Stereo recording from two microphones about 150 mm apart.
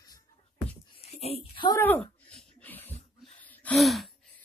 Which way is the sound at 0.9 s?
40° left (ahead or behind).